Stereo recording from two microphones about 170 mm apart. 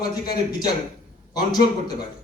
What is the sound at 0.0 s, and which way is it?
Speech, 25° left (ahead or behind).